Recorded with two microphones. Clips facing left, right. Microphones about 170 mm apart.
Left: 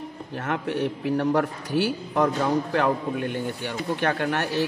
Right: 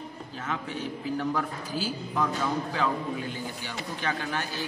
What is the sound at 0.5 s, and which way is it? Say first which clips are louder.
A man's voice: left 8 dB; 65° left (ahead or behind).